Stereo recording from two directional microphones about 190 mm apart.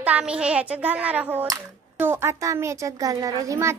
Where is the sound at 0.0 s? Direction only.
5° right (ahead or behind).